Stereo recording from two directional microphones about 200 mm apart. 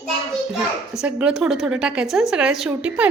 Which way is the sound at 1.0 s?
5° right (ahead or behind).